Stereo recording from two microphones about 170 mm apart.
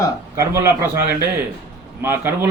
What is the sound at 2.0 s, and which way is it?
Speech, 15° right (ahead or behind).